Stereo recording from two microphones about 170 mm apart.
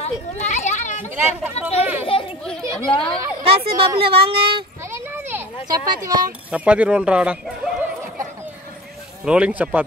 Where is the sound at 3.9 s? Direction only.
35° right (ahead or behind).